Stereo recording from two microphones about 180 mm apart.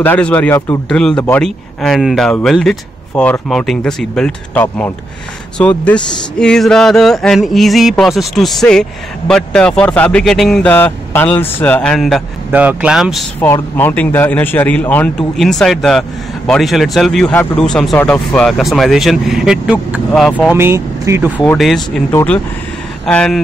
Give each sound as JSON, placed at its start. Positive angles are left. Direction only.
{"t": 0.0, "sound": "speech", "side_deg": 10}
{"t": 0.8, "sound": "a man's voice", "side_deg": 5}
{"t": 12.4, "sound": "a man's voice", "side_deg": -10}
{"t": 13.4, "sound": "a man's voice", "side_deg": 10}
{"t": 20.2, "sound": "speech", "side_deg": 5}
{"t": 20.5, "sound": "speech", "side_deg": -15}
{"t": 21.5, "sound": "a man's voice", "side_deg": 0}